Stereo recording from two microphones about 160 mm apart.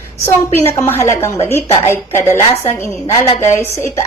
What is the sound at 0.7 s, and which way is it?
A woman's voice, 15° left (ahead or behind).